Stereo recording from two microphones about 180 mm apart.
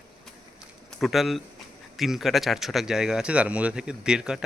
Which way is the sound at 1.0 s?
Centre (ahead or behind).